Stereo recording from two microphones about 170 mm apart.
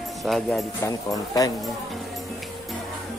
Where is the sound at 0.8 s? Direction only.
20° left (ahead or behind).